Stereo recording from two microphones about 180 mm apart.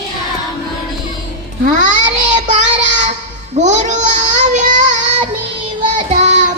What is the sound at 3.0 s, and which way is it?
Child singing, 40° right (ahead or behind).